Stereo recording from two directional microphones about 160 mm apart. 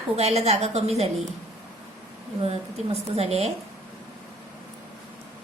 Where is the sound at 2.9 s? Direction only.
40° right (ahead or behind).